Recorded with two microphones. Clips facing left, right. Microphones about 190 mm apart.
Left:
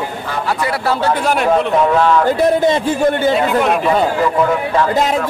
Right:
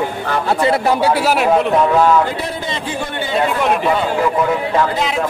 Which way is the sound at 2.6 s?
45° left (ahead or behind).